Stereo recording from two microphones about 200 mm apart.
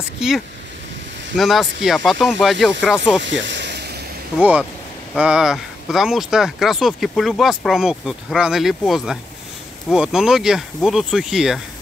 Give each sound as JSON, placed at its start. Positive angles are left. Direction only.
{"t": 1.3, "sound": "speech", "side_deg": 0}
{"t": 3.2, "sound": "snake", "side_deg": -65}
{"t": 4.4, "sound": "speech", "side_deg": -5}